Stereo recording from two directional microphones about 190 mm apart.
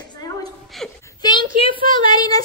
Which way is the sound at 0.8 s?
Centre (ahead or behind).